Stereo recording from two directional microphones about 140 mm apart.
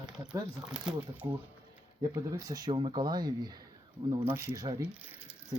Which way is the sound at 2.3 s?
25° right (ahead or behind).